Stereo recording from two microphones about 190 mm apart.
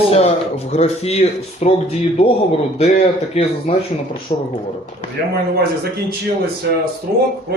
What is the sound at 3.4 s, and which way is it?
Speech, 30° left (ahead or behind).